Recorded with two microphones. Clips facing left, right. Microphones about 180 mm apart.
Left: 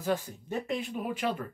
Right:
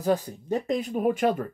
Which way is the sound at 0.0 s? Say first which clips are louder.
Right 6 dB; 40° right (ahead or behind).